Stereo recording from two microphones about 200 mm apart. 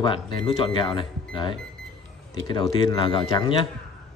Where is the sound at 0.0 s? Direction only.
25° left (ahead or behind).